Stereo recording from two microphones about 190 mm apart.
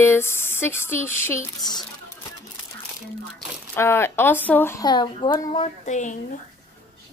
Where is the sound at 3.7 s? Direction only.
15° left (ahead or behind); by 6.1 s 40° left (ahead or behind).